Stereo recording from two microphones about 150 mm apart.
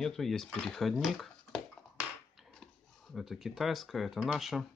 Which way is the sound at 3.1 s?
Centre (ahead or behind).